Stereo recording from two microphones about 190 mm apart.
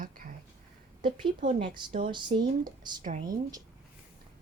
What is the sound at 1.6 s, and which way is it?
Speech, 25° right (ahead or behind).